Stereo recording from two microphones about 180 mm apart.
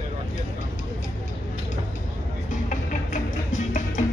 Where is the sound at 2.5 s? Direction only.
45° left (ahead or behind).